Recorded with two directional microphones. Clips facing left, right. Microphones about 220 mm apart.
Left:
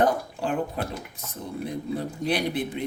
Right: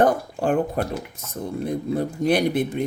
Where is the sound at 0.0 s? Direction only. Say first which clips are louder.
Right 4 dB; 50° right (ahead or behind).